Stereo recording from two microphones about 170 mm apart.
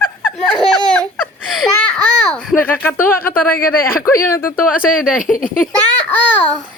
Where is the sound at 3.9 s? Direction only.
15° left (ahead or behind).